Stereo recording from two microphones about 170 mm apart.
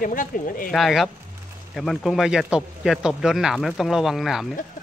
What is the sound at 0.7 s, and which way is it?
Speech, centre (ahead or behind).